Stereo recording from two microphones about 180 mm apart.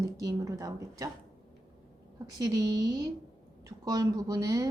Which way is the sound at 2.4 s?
20° right (ahead or behind).